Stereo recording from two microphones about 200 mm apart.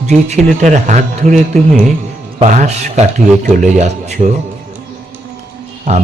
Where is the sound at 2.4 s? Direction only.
35° right (ahead or behind).